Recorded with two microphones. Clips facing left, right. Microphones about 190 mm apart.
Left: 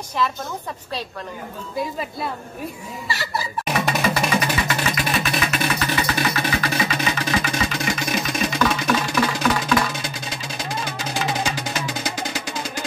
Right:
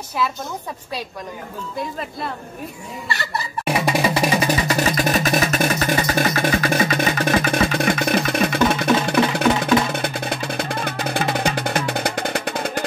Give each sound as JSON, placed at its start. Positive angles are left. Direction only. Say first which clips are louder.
{"t": 2.0, "sound": "speech", "louder": "even", "side_deg": 0}
{"t": 4.1, "sound": "music", "louder": "right 3 dB", "side_deg": -35}
{"t": 9.5, "sound": "music", "louder": "right 3 dB", "side_deg": -25}
{"t": 9.9, "sound": "music", "louder": "right 7 dB", "side_deg": -60}